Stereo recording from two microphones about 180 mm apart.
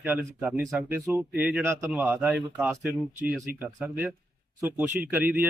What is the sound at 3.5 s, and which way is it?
Speech, 55° right (ahead or behind).